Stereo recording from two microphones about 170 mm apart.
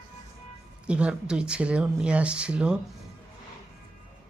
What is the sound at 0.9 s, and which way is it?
Speech, 5° right (ahead or behind).